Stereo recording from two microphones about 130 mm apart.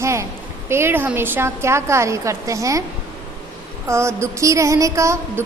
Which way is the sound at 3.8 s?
20° right (ahead or behind).